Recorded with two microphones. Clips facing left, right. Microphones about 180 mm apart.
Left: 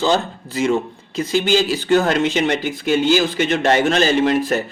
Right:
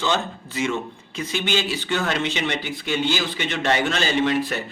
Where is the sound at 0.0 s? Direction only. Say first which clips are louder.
Left 6 dB; 35° left (ahead or behind).